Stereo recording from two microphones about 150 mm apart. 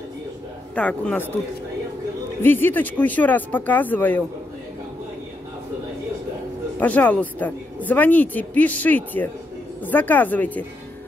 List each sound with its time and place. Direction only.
0.7 s speech: 10° left (ahead or behind)
2.4 s speech: 15° left (ahead or behind)
6.8 s speech: 10° left (ahead or behind)